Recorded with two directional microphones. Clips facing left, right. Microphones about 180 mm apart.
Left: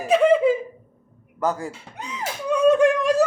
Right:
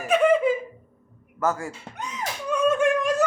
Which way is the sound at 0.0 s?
35° left (ahead or behind).